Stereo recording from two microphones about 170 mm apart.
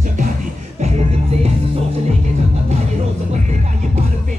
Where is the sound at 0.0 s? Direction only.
50° right (ahead or behind).